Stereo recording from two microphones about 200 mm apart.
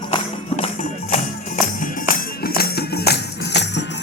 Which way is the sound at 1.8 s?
45° left (ahead or behind).